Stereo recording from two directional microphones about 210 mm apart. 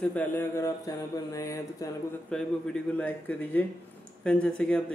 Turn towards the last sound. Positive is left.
turn(degrees=5)  # may be behind; listen again after turning